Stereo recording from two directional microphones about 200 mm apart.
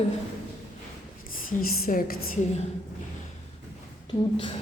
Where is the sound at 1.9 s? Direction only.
45° left (ahead or behind).